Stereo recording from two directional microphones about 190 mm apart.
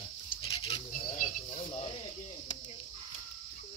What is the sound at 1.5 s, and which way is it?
Sizzle, 30° left (ahead or behind).